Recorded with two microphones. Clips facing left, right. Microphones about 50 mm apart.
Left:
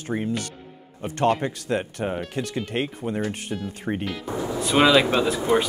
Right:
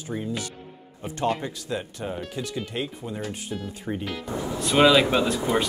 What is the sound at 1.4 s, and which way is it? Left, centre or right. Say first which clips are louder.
Speech: left 5 dB; left.